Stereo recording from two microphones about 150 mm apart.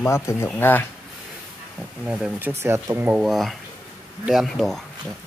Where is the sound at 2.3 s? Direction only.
15° right (ahead or behind).